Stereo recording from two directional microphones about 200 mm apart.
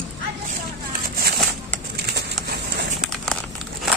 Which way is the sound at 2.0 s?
55° right (ahead or behind).